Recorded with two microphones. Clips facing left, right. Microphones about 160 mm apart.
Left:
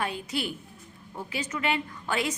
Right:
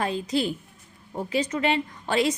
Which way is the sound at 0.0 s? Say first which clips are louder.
Right 6 dB; 35° right (ahead or behind).